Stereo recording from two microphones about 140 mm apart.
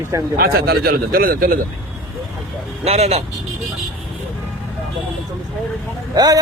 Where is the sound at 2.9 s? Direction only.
50° right (ahead or behind).